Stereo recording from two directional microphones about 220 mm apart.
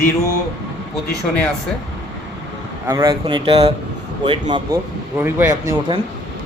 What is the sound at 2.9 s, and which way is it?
Speech, 15° right (ahead or behind).